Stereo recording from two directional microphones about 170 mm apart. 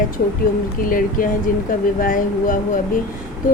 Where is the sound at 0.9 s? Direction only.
55° left (ahead or behind).